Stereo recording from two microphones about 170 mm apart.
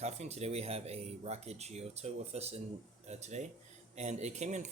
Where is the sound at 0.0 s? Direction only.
40° right (ahead or behind).